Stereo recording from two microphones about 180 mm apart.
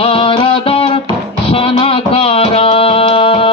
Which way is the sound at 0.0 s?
30° left (ahead or behind).